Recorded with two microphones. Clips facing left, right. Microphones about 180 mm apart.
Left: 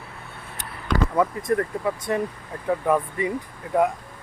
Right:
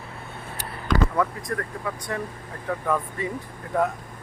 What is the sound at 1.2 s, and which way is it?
Speech, 25° left (ahead or behind).